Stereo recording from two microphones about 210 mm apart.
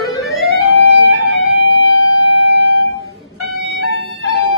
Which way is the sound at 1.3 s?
65° left (ahead or behind).